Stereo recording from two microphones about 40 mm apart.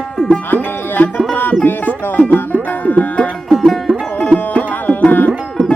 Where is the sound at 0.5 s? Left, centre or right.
Left.